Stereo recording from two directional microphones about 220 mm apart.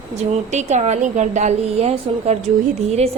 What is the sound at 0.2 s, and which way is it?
A woman's voice, 30° right (ahead or behind).